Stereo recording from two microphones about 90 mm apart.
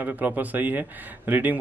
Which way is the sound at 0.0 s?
20° right (ahead or behind).